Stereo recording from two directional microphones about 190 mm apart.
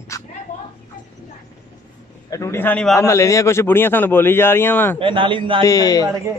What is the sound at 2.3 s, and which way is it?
A man's voice, 15° left (ahead or behind).